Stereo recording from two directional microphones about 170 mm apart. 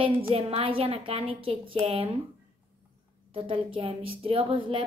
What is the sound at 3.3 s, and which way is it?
A woman's voice, 30° right (ahead or behind).